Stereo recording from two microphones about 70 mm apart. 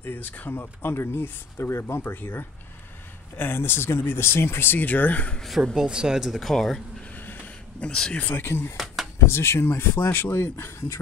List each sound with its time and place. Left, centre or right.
0.0 s speech: left
5.4 s speech: centre
6.5 s speech: centre
7.0 s a sound: left
7.9 s speech: centre
8.2 s speech: left
8.7 s a sound: centre
9.2 s speech: left